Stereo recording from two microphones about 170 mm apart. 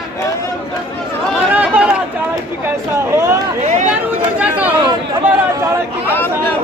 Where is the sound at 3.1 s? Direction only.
15° right (ahead or behind).